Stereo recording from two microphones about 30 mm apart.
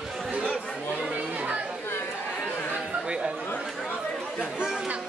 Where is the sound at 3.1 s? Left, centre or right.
Right.